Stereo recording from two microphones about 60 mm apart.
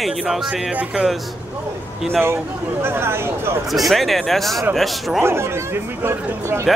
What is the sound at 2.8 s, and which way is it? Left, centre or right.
Speech, right.